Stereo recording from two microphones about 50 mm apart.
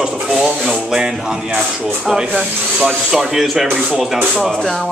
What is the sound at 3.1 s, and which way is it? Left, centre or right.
Speech, centre.